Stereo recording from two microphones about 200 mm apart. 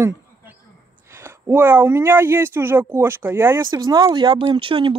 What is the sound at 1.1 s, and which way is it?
Speech, 10° right (ahead or behind).